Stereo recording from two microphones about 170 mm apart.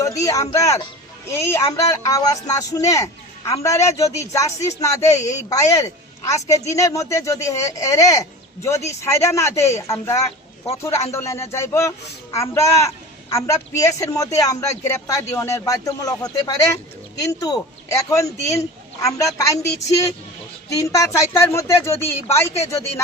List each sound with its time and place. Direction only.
0.0 s a woman's voice: 20° left (ahead or behind)
20.7 s speech: 20° left (ahead or behind)